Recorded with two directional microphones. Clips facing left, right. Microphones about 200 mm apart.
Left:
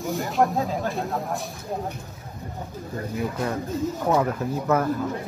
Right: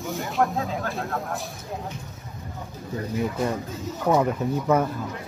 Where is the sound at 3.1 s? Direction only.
Centre (ahead or behind).